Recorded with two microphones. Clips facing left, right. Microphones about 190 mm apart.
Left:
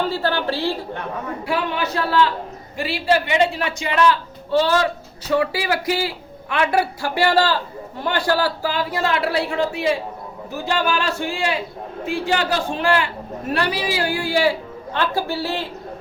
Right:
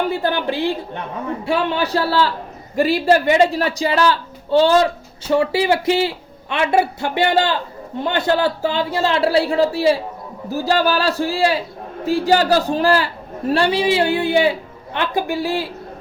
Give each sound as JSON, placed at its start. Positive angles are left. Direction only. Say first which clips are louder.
{"t": 0.0, "sound": "a woman's voice", "louder": "right 2 dB", "side_deg": -15}
{"t": 1.5, "sound": "a man's voice", "louder": "right 4 dB", "side_deg": -30}
{"t": 2.7, "sound": "a man's voice", "louder": "right 5 dB", "side_deg": -40}